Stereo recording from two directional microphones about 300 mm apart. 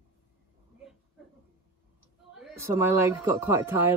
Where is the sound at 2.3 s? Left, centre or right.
Centre.